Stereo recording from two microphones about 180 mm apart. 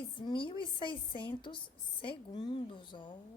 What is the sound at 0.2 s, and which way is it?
Speech, 25° left (ahead or behind).